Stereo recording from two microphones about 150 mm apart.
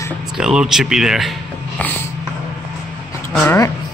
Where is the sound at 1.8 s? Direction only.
10° left (ahead or behind).